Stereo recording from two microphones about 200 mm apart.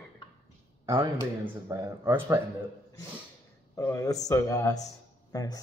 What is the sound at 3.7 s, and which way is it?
A man's voice, 15° left (ahead or behind).